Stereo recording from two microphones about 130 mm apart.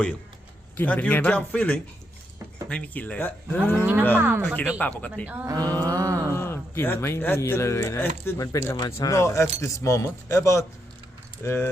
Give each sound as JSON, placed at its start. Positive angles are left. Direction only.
{"t": 0.8, "sound": "speech", "side_deg": 15}
{"t": 3.8, "sound": "speech", "side_deg": -15}
{"t": 4.8, "sound": "speech", "side_deg": 10}
{"t": 5.2, "sound": "speech", "side_deg": -10}
{"t": 5.5, "sound": "mantra", "side_deg": -30}
{"t": 6.3, "sound": "speech", "side_deg": 20}